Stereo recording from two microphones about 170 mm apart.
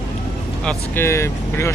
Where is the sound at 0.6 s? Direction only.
5° left (ahead or behind).